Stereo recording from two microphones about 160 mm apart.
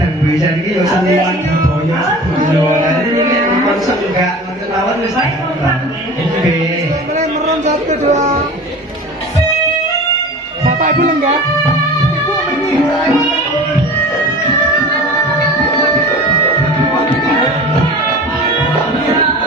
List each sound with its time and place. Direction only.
7.6 s speech: 45° right (ahead or behind)